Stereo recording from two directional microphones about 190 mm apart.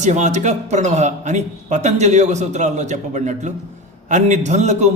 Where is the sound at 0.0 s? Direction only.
35° right (ahead or behind).